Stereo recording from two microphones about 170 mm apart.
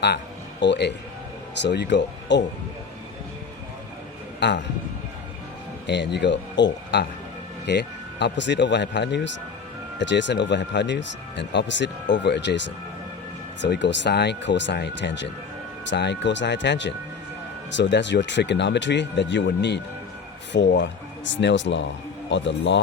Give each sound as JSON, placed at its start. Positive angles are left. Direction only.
{"t": 0.6, "sound": "a man's voice", "side_deg": 90}
{"t": 4.4, "sound": "a man's voice", "side_deg": 90}
{"t": 5.9, "sound": "speech", "side_deg": 90}